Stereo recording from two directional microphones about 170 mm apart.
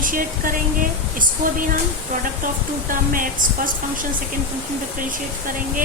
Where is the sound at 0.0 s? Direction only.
55° right (ahead or behind).